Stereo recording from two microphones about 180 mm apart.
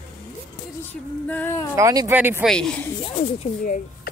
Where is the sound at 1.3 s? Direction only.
10° left (ahead or behind).